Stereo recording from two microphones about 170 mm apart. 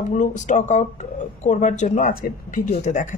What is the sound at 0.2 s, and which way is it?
Speech, 45° left (ahead or behind).